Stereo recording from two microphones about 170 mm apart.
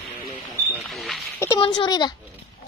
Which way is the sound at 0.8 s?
Centre (ahead or behind).